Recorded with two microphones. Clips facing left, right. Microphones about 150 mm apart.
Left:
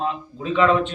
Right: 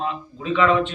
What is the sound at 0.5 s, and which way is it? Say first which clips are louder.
Speech: even; 45° left (ahead or behind).